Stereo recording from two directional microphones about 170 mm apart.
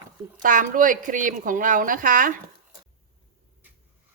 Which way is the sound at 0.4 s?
55° right (ahead or behind).